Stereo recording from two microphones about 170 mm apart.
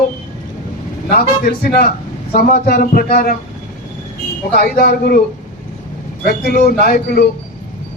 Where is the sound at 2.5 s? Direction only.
60° left (ahead or behind).